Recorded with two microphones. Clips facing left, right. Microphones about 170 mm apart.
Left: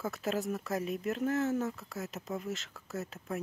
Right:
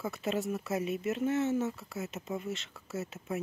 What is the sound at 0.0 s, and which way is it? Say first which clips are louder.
Speech: right 1 dB; centre (ahead or behind).